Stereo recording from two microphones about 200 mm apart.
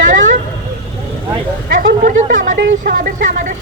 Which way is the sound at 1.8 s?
45° right (ahead or behind).